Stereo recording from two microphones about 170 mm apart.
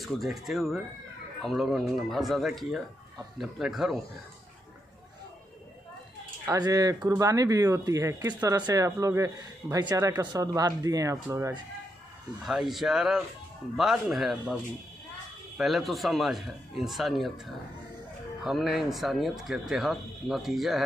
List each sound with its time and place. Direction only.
0.0 s speech: centre (ahead or behind)
6.4 s speech: 20° right (ahead or behind)
12.4 s speech: centre (ahead or behind)
18.4 s speech: centre (ahead or behind)